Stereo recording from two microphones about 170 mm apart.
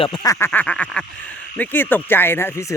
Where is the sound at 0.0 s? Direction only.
25° left (ahead or behind).